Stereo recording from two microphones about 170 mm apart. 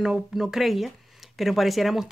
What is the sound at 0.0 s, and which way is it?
A woman's voice, centre (ahead or behind).